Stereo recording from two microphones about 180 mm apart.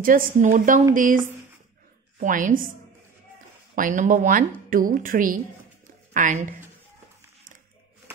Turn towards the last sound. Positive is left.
turn(degrees=-45)  # may be behind; listen again after turning